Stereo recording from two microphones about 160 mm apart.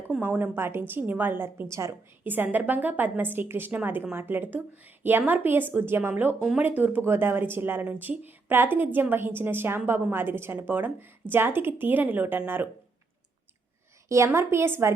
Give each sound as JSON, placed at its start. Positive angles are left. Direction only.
{"t": 0.1, "sound": "a woman's voice", "side_deg": -10}
{"t": 14.1, "sound": "a woman's voice", "side_deg": -15}